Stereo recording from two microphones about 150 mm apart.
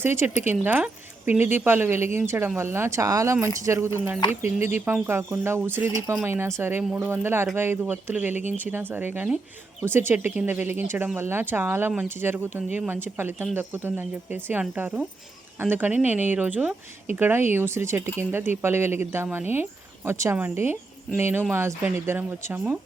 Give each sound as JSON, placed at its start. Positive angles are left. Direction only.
{"t": 0.0, "sound": "speech", "side_deg": -15}